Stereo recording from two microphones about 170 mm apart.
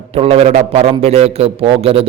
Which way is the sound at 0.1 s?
35° right (ahead or behind).